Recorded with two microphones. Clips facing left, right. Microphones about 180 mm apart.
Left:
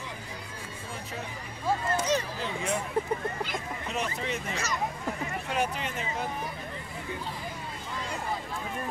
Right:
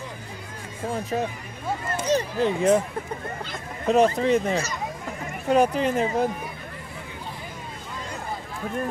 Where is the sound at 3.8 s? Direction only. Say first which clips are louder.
Right 17 dB; 40° right (ahead or behind).